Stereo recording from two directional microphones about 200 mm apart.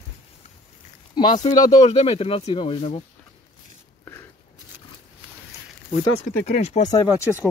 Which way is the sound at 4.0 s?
10° left (ahead or behind).